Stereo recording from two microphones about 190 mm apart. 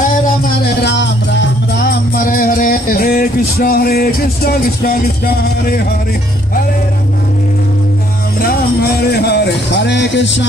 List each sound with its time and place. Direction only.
0.8 s music: 70° left (ahead or behind); by 5.8 s 50° left (ahead or behind)
8.4 s music: 55° left (ahead or behind); by 10.4 s 70° left (ahead or behind)